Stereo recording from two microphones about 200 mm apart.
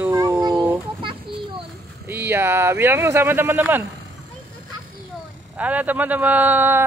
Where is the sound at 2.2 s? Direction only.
10° right (ahead or behind).